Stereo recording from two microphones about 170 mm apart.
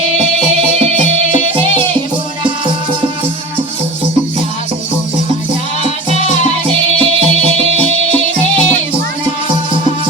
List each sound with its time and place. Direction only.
0.2 s music: 35° right (ahead or behind)
5.8 s music: 35° right (ahead or behind)